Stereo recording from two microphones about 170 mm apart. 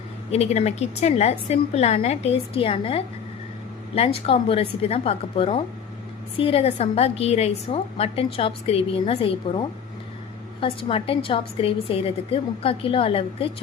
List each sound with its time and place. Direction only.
0.3 s a woman's voice: 40° left (ahead or behind)